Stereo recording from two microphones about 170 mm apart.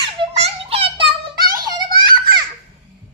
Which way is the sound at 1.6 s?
25° right (ahead or behind).